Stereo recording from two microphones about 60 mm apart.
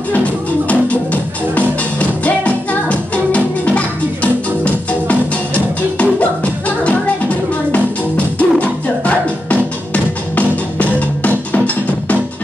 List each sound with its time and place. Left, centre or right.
0.7 s music: left